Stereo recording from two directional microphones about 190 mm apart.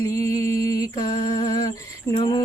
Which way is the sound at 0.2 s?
15° left (ahead or behind).